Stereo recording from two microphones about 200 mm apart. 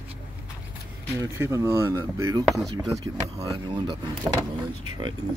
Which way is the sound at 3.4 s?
20° right (ahead or behind).